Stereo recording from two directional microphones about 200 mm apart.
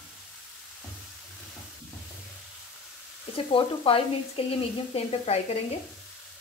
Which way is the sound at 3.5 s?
25° left (ahead or behind).